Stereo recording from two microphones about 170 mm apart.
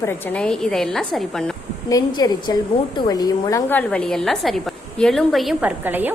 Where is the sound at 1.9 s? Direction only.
20° left (ahead or behind); by 5.7 s centre (ahead or behind).